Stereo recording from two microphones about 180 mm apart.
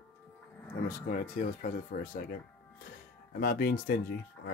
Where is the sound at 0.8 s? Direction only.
50° left (ahead or behind).